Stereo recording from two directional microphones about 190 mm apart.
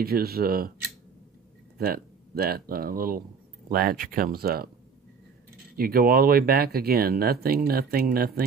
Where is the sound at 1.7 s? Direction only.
55° right (ahead or behind).